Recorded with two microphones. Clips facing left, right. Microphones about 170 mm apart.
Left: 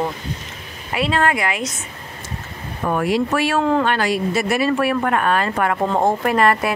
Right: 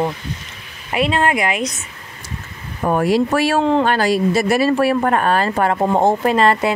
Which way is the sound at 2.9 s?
35° right (ahead or behind).